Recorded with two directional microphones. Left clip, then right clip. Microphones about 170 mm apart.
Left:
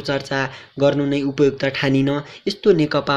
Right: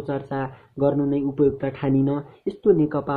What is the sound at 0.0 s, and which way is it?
Speech, 15° left (ahead or behind).